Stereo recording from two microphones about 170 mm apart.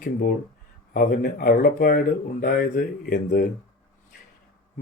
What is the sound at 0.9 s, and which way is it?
Speech, 60° left (ahead or behind).